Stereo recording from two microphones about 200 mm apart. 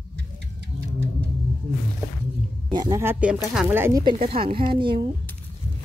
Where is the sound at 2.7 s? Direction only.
20° right (ahead or behind).